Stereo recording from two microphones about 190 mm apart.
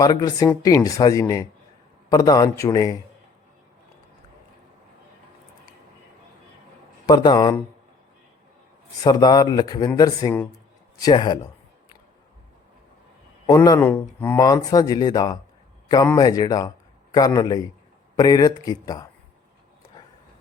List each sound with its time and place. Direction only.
0.0 s speech: 20° left (ahead or behind)
7.0 s a man's voice: 20° left (ahead or behind)
9.0 s speech: 20° left (ahead or behind)
13.5 s a man's voice: 15° left (ahead or behind)